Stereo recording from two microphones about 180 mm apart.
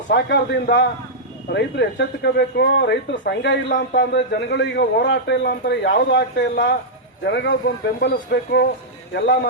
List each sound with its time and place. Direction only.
0.1 s a man's voice: 75° left (ahead or behind)